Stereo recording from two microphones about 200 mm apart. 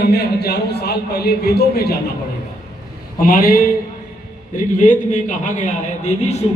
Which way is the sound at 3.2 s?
45° left (ahead or behind).